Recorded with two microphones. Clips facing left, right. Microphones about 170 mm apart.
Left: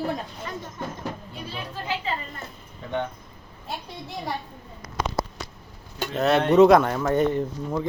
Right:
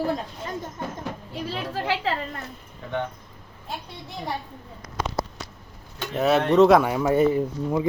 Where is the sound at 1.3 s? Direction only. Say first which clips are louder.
Right 5 dB; 90° right.